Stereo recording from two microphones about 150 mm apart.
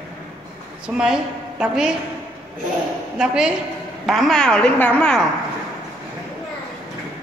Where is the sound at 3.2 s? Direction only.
5° right (ahead or behind).